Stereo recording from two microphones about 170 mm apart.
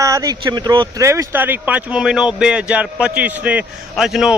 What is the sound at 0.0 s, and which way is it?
Speech, 20° right (ahead or behind).